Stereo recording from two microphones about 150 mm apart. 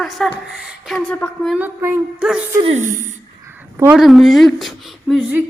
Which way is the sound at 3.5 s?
15° right (ahead or behind).